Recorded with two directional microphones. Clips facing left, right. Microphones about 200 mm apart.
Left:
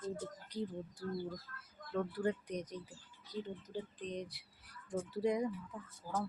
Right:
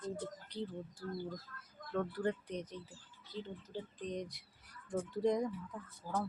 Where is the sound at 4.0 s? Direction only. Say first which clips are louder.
Right 1 dB; centre (ahead or behind).